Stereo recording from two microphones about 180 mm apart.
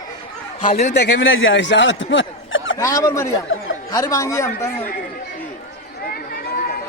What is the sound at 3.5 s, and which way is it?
Speech, 90° left.